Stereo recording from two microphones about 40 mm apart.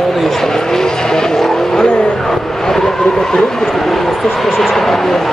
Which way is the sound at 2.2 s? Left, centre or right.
Centre.